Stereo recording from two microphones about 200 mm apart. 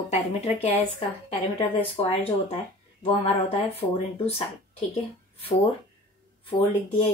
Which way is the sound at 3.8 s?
25° left (ahead or behind).